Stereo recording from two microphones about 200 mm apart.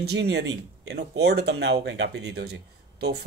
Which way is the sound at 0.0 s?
55° right (ahead or behind).